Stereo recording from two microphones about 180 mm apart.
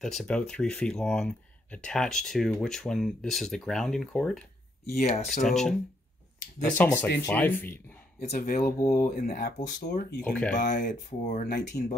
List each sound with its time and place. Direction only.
0.0 s speech: 5° left (ahead or behind)
4.8 s speech: 50° left (ahead or behind)
5.4 s speech: centre (ahead or behind)
8.2 s speech: 40° left (ahead or behind)
9.8 s speech: 65° left (ahead or behind)
10.2 s speech: 5° left (ahead or behind)
10.5 s speech: 45° left (ahead or behind)
11.4 s speech: 65° left (ahead or behind)